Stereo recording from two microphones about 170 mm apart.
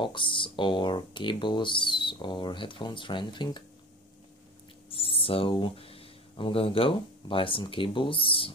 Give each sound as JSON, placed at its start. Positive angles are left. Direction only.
{"t": 0.0, "sound": "speech", "side_deg": 30}
{"t": 4.8, "sound": "speech", "side_deg": 35}